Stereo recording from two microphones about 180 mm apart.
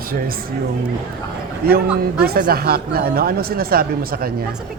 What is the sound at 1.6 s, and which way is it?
Speech, 55° right (ahead or behind).